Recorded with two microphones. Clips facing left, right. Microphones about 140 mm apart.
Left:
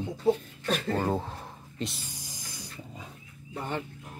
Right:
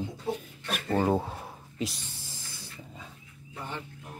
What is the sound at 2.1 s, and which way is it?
Snake, 15° left (ahead or behind).